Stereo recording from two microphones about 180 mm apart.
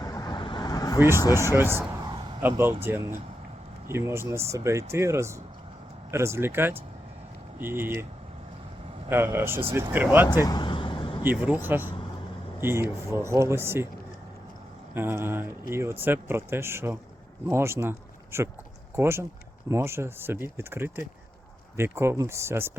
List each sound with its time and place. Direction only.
0.0 s vehicle: 20° left (ahead or behind)
1.5 s speech: 15° right (ahead or behind)
2.0 s a sound: 20° right (ahead or behind)
2.4 s speech: 15° right (ahead or behind)
3.8 s speech: 15° right (ahead or behind)
9.0 s speech: 15° right (ahead or behind)
10.4 s vehicle: 25° left (ahead or behind)
11.2 s speech: 10° right (ahead or behind)
14.9 s speech: 10° right (ahead or behind)